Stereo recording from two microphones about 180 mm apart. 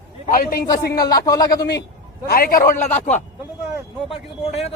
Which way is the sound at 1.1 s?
20° left (ahead or behind).